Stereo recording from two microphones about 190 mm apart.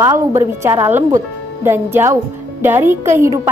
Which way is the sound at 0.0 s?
15° right (ahead or behind).